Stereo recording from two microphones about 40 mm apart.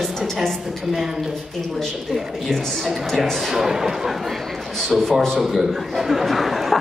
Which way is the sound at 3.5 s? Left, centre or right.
Centre.